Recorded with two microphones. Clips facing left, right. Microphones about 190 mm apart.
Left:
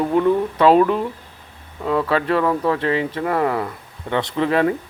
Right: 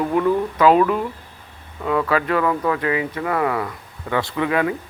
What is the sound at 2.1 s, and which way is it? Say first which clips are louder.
Speech: left 2 dB; 30° left (ahead or behind).